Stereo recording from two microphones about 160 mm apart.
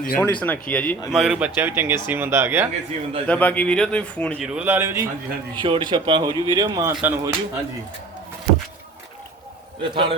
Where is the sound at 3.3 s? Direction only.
10° left (ahead or behind).